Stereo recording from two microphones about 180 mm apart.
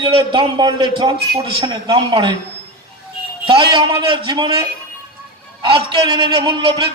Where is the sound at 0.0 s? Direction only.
30° right (ahead or behind).